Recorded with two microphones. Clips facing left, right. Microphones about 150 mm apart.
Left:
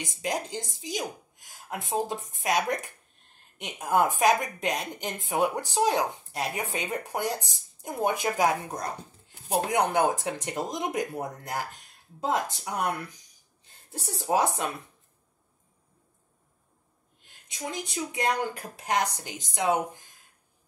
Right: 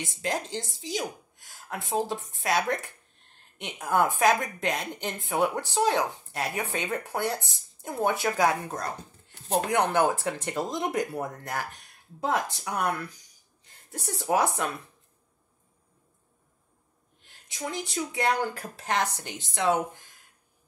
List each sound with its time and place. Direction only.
0.0 s a woman's voice: 15° left (ahead or behind)
14.2 s speech: 20° left (ahead or behind)
17.2 s a woman's voice: 20° left (ahead or behind)